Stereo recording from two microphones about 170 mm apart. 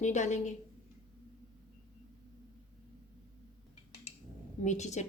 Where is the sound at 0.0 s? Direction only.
45° left (ahead or behind).